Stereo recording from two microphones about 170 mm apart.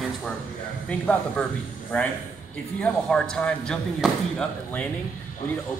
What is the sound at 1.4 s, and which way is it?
A man's voice, 10° left (ahead or behind).